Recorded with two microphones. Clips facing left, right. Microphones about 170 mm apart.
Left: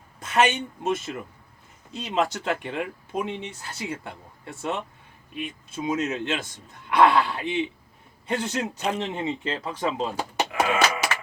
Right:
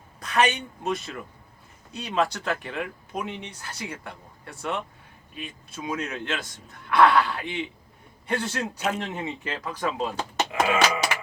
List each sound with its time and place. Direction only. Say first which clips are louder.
0.2 s a woman's voice: left 2 dB; 25° left (ahead or behind)
6.8 s a sound: even; 20° left (ahead or behind)
8.3 s speech: left 1 dB; 20° left (ahead or behind)
10.5 s music: right 1 dB; 35° right (ahead or behind)